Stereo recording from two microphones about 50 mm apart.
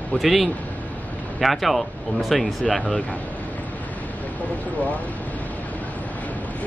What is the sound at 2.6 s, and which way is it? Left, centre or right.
Speech, left.